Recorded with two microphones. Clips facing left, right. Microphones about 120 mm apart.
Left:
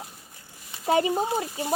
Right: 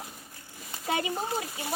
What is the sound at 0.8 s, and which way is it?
Speech, 30° left (ahead or behind).